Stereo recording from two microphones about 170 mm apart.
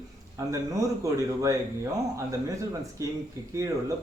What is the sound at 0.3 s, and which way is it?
Speech, 20° right (ahead or behind).